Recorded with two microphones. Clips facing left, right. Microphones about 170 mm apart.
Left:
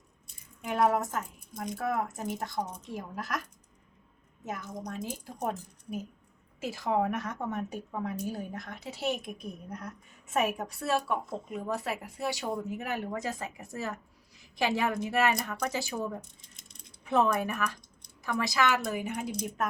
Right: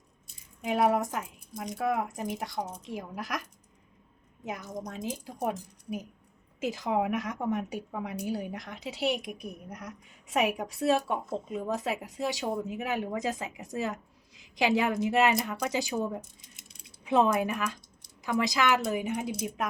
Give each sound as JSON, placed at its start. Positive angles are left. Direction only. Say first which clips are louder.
{"t": 0.6, "sound": "speech", "louder": "right 1 dB", "side_deg": -15}
{"t": 4.9, "sound": "speech", "louder": "right 1 dB", "side_deg": -20}
{"t": 17.1, "sound": "speech", "louder": "right 2 dB", "side_deg": -20}